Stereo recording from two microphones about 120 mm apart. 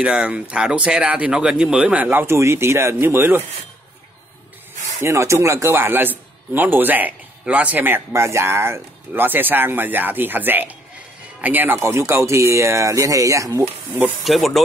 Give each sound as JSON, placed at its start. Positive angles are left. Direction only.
{"t": 0.0, "sound": "a man's voice", "side_deg": -10}
{"t": 5.0, "sound": "a man's voice", "side_deg": -25}
{"t": 14.2, "sound": "speech", "side_deg": 0}